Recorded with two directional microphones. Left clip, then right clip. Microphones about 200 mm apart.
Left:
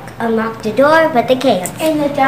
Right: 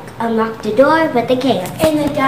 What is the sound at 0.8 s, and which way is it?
Speech, 45° left (ahead or behind).